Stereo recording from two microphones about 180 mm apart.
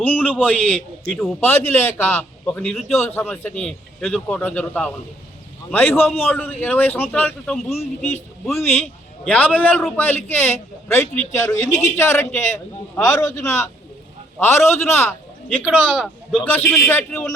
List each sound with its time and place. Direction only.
0.0 s a man's voice: 10° left (ahead or behind)
1.4 s a man's voice: 10° left (ahead or behind)